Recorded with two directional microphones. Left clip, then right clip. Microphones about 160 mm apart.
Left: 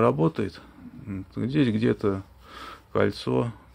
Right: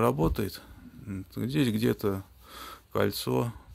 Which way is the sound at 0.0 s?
15° right (ahead or behind).